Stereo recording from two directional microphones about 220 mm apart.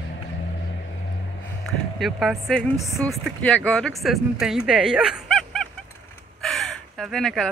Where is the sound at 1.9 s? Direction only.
Centre (ahead or behind).